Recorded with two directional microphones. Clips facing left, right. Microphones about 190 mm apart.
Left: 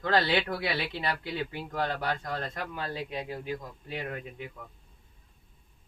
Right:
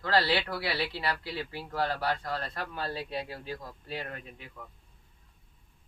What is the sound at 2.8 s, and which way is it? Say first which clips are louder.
Speech: right 1 dB; 35° right (ahead or behind).